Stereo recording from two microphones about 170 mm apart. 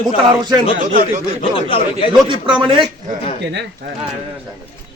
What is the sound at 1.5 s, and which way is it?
Speech, 30° left (ahead or behind).